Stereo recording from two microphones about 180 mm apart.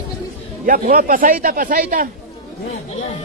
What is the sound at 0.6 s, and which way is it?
A man's voice, 50° right (ahead or behind).